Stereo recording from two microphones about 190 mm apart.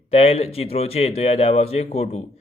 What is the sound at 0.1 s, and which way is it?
A man's voice, 35° left (ahead or behind).